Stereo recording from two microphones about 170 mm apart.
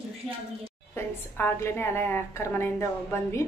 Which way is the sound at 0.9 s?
15° left (ahead or behind).